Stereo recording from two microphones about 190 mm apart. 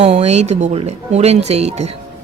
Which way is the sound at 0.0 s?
35° right (ahead or behind).